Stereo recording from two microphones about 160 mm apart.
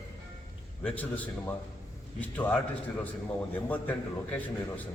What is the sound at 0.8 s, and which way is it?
A man's voice, 10° left (ahead or behind).